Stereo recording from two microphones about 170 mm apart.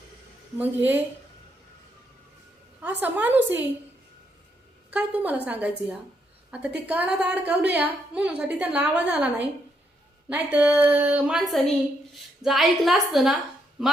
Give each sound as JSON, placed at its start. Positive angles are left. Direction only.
{"t": 0.6, "sound": "a woman's voice", "side_deg": -10}
{"t": 2.8, "sound": "a woman's voice", "side_deg": -10}
{"t": 4.9, "sound": "a woman's voice", "side_deg": -10}